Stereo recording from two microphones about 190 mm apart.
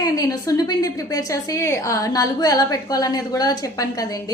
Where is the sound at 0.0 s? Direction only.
20° left (ahead or behind).